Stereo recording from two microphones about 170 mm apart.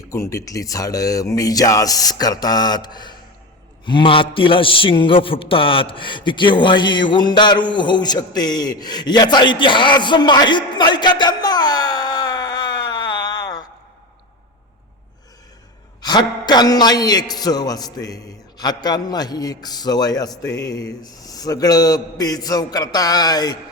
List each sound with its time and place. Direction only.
0.1 s a man's voice: 15° left (ahead or behind)
16.0 s a man's voice: 25° left (ahead or behind)
20.4 s speech: 90° left
20.7 s a man's voice: 20° left (ahead or behind)